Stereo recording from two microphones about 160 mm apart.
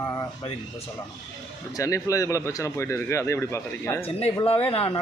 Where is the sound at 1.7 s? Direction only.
20° left (ahead or behind).